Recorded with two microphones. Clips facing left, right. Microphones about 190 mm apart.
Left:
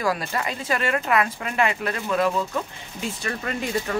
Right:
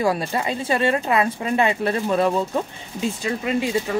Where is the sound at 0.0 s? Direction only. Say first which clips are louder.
Right 4 dB; 25° right (ahead or behind).